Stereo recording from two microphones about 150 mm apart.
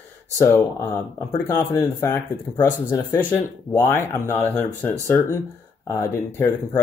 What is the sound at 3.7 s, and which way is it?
Speech, 20° left (ahead or behind).